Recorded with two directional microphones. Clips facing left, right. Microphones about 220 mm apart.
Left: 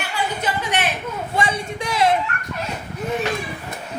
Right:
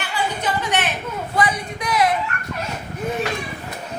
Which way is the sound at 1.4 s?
25° left (ahead or behind).